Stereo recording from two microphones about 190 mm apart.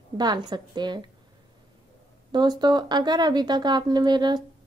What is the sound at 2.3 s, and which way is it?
Speech, 20° right (ahead or behind).